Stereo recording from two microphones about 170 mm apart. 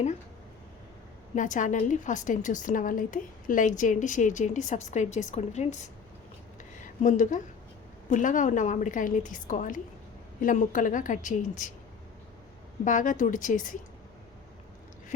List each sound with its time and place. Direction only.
1.4 s a woman's voice: 50° left (ahead or behind)
6.6 s a sound: 45° left (ahead or behind)
8.1 s a woman's voice: 50° left (ahead or behind)
12.8 s a woman's voice: 50° left (ahead or behind)